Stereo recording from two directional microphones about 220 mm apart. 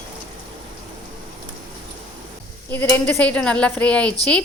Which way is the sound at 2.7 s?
10° left (ahead or behind).